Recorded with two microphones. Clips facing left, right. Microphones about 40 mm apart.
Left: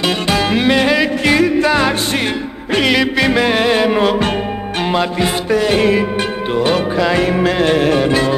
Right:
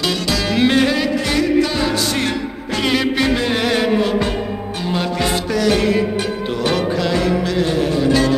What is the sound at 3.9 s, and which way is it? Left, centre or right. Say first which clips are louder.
Music: left 3 dB; left.